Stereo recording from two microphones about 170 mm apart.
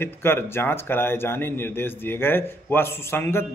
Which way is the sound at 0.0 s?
15° left (ahead or behind).